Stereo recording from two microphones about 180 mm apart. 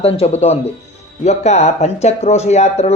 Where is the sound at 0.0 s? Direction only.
35° left (ahead or behind).